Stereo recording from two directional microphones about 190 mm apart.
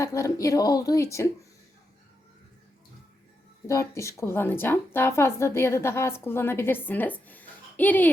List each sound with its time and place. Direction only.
0.0 s a woman's voice: 15° left (ahead or behind)
3.7 s a woman's voice: 15° left (ahead or behind)